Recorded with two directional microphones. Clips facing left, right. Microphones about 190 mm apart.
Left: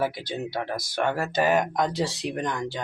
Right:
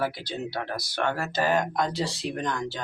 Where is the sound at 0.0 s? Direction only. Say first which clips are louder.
Left 2 dB; 20° left (ahead or behind).